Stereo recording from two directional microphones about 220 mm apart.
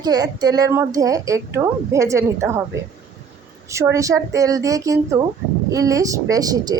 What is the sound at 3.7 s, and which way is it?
A woman's voice, 15° right (ahead or behind).